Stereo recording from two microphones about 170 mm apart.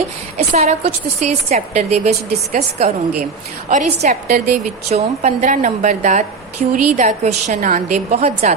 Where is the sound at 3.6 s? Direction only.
40° right (ahead or behind).